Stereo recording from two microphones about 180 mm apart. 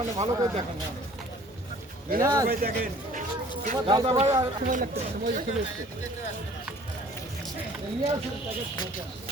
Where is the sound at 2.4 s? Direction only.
55° right (ahead or behind).